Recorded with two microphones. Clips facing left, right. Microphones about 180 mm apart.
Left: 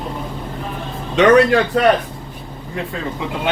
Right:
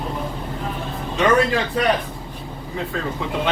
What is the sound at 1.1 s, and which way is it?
Speech, 80° left.